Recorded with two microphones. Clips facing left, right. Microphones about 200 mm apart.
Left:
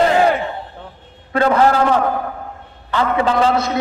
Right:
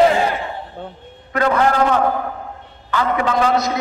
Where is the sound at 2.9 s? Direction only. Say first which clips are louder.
Left 2 dB; 30° left (ahead or behind).